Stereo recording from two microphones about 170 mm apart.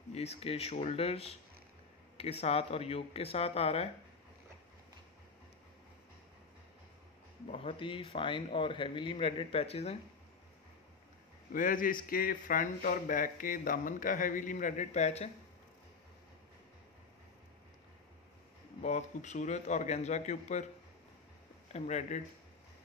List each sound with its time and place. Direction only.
0.1 s a man's voice: 40° left (ahead or behind)
7.5 s a man's voice: 30° left (ahead or behind)
11.5 s speech: 55° left (ahead or behind)
18.8 s speech: 45° left (ahead or behind)
21.7 s speech: 45° left (ahead or behind)